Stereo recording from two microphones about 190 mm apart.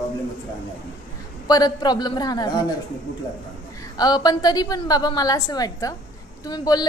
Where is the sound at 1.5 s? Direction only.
20° left (ahead or behind).